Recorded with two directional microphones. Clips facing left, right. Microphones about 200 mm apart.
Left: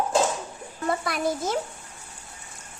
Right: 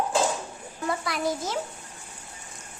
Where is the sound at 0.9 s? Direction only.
50° left (ahead or behind).